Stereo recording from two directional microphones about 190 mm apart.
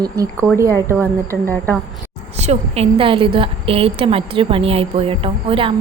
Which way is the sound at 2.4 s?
35° right (ahead or behind).